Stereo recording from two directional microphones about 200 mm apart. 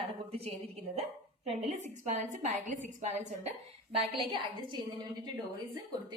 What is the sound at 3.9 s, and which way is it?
Speech, 25° right (ahead or behind).